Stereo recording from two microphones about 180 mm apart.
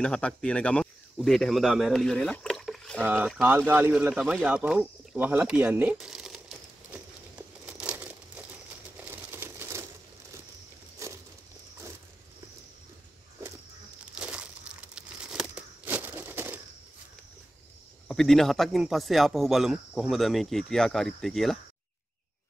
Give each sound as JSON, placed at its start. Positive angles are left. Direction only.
{"t": 0.0, "sound": "speech", "side_deg": 5}
{"t": 6.9, "sound": "a sound", "side_deg": -5}
{"t": 7.8, "sound": "crumpling", "side_deg": -10}
{"t": 11.0, "sound": "a sound", "side_deg": -15}
{"t": 14.1, "sound": "crumpling", "side_deg": -5}
{"t": 18.0, "sound": "speech", "side_deg": 0}